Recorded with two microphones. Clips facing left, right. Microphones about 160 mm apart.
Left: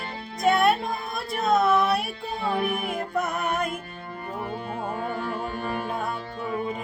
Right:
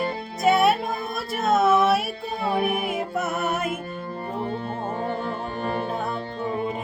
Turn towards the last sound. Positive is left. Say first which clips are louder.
# right 2 dB
turn(degrees=-35)  # may be behind; listen again after turning